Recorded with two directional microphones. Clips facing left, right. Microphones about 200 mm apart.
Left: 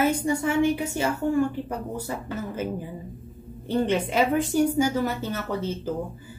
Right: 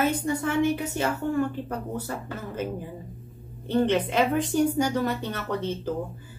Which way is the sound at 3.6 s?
10° left (ahead or behind).